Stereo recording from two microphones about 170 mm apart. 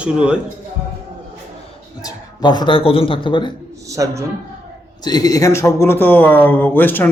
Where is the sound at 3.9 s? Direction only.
20° right (ahead or behind).